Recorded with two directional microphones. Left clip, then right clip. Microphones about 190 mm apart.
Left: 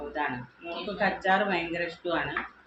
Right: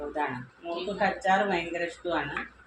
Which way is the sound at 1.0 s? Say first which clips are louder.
Even; 20° right (ahead or behind).